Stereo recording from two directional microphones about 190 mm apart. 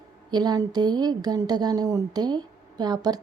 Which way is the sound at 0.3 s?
20° right (ahead or behind).